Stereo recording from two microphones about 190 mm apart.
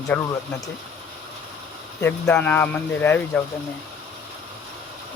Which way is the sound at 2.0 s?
10° left (ahead or behind).